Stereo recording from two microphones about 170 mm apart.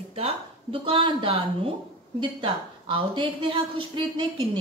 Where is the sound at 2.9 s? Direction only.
30° right (ahead or behind).